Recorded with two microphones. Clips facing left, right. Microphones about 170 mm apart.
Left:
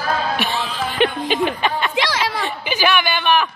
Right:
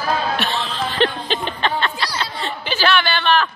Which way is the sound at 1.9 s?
90° left.